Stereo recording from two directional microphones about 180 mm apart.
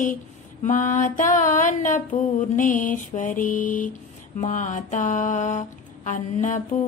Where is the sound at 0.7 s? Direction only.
45° left (ahead or behind).